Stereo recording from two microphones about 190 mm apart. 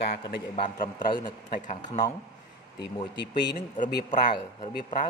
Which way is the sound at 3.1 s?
65° left (ahead or behind).